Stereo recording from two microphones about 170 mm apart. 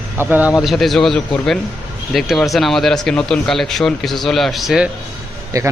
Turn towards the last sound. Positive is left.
turn(degrees=-20)  # may be behind; listen again after turning